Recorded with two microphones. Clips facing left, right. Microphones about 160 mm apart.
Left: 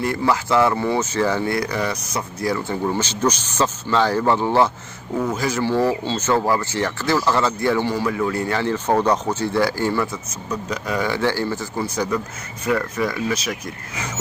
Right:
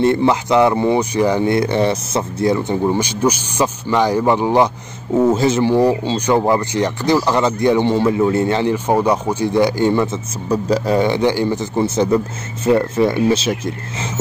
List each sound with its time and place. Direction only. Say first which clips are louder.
0.0 s speech: right 6 dB; 25° right (ahead or behind)
5.1 s speech: right 8 dB; 25° right (ahead or behind)
10.5 s speech: right 9 dB; 30° right (ahead or behind)